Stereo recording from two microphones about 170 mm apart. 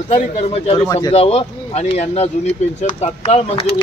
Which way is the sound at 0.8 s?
20° left (ahead or behind).